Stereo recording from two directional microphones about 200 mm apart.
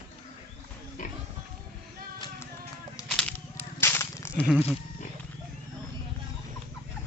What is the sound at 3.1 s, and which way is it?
Whip, 5° left (ahead or behind).